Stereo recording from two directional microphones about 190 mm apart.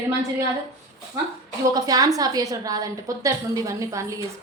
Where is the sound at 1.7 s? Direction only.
20° right (ahead or behind).